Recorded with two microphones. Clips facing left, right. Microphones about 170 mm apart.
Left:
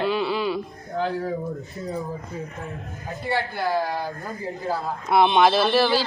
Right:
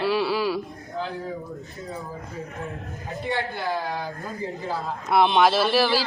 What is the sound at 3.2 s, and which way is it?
Speech, 20° right (ahead or behind).